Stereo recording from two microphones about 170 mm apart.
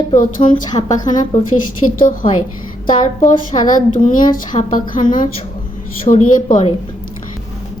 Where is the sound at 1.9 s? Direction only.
50° left (ahead or behind).